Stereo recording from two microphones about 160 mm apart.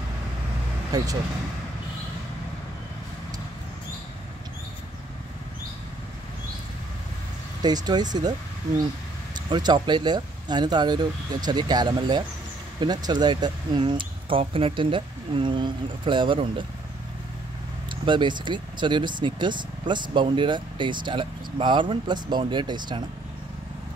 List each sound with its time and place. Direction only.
0.9 s speech: 20° right (ahead or behind)
7.6 s speech: 25° right (ahead or behind)
9.5 s speech: 25° right (ahead or behind)
18.0 s speech: 30° right (ahead or behind)